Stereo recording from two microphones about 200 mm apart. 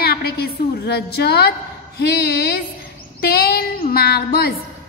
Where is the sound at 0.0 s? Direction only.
50° left (ahead or behind).